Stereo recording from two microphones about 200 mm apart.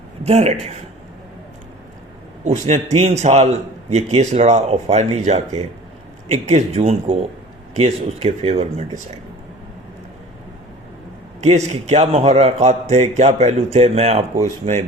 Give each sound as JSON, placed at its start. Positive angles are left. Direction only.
{"t": 0.3, "sound": "a man's voice", "side_deg": -30}
{"t": 2.4, "sound": "a man's voice", "side_deg": -35}
{"t": 11.3, "sound": "a man's voice", "side_deg": -35}